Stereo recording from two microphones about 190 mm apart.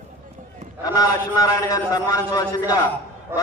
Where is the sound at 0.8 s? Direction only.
20° left (ahead or behind).